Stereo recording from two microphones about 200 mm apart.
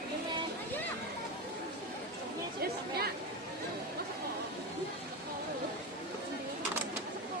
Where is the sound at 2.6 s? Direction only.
50° right (ahead or behind).